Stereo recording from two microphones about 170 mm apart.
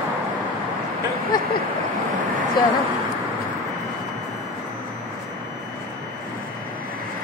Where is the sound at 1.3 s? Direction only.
25° left (ahead or behind).